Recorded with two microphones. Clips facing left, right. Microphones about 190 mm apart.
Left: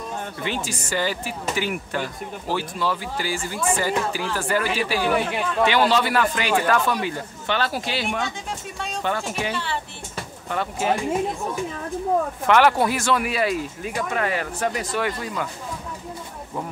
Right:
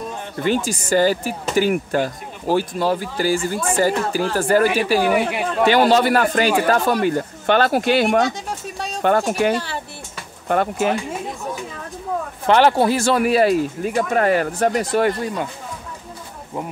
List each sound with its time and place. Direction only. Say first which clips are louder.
0.4 s speech: right 11 dB; 45° right (ahead or behind)
8.2 s music: right 8 dB; 40° right (ahead or behind)
9.0 s speech: right 10 dB; 50° right (ahead or behind)
10.5 s speech: right 7 dB; 55° right (ahead or behind)
12.4 s speech: right 4 dB; 30° right (ahead or behind); by 15.1 s 45° right (ahead or behind)